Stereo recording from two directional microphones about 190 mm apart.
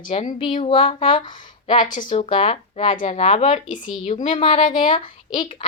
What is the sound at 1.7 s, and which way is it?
Speech, 45° left (ahead or behind).